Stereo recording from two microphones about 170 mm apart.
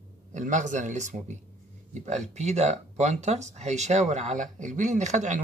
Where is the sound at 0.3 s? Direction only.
45° right (ahead or behind).